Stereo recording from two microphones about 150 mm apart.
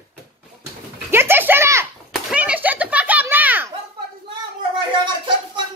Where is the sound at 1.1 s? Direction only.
15° right (ahead or behind).